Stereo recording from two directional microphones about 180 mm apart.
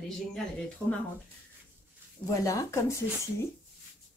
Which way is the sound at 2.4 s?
15° left (ahead or behind).